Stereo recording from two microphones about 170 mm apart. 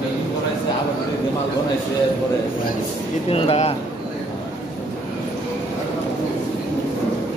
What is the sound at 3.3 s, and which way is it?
Speech, 35° left (ahead or behind).